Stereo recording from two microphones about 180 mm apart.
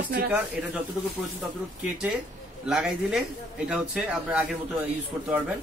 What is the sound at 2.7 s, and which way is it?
Speech, 5° right (ahead or behind).